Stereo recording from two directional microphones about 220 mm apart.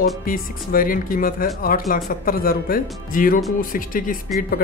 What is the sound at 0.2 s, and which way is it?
Speech, 40° left (ahead or behind).